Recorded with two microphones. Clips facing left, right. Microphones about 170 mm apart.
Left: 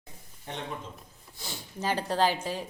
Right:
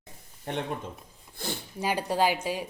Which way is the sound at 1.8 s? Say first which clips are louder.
Right 1 dB; 10° right (ahead or behind).